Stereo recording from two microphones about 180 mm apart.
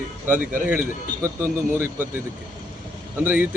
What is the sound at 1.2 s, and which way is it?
A man's voice, 15° right (ahead or behind).